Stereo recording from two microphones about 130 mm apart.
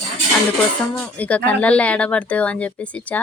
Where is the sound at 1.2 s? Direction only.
10° left (ahead or behind).